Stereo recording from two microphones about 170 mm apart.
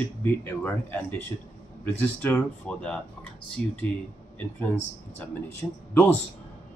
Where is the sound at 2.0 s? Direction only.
10° left (ahead or behind).